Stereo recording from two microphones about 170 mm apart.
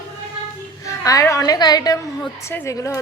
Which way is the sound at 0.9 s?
20° left (ahead or behind).